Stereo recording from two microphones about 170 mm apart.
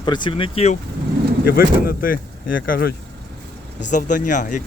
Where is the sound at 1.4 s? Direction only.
60° left (ahead or behind).